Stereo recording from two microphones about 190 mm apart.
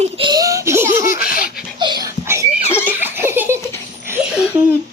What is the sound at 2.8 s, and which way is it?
Laughter, 10° right (ahead or behind).